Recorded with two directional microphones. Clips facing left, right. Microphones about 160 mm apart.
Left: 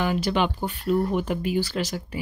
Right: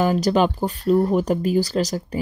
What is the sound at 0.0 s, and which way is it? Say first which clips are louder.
Speech: right 5 dB; 40° right (ahead or behind).